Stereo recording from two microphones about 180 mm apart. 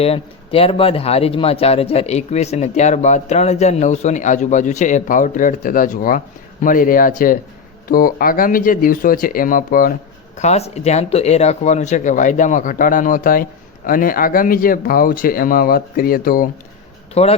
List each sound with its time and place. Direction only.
0.0 s speech: 35° left (ahead or behind); by 9.9 s 50° left (ahead or behind)
10.3 s speech: 40° left (ahead or behind); by 16.5 s 55° left (ahead or behind)
17.2 s speech: 35° left (ahead or behind)